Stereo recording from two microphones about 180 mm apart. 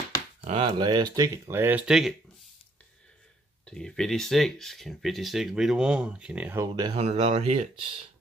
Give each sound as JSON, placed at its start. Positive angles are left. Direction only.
{"t": 0.4, "sound": "speech", "side_deg": -35}
{"t": 3.6, "sound": "speech", "side_deg": 5}
{"t": 6.7, "sound": "speech", "side_deg": -30}